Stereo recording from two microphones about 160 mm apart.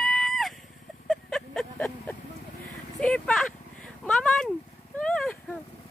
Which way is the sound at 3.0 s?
5° left (ahead or behind).